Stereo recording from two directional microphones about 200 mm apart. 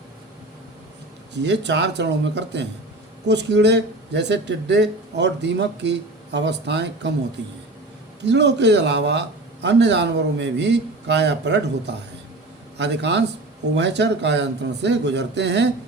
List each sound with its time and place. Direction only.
1.4 s speech: 60° right (ahead or behind)
8.2 s speech: 60° right (ahead or behind)